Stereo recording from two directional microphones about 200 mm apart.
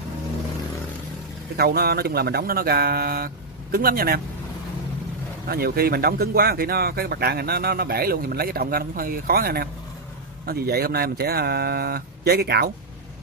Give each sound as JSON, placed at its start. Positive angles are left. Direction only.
{"t": 1.6, "sound": "speech", "side_deg": -50}
{"t": 5.5, "sound": "speech", "side_deg": -50}